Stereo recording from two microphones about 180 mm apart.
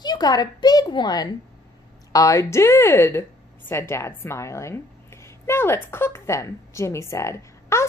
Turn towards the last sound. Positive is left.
turn(degrees=15)  # may be behind; listen again after turning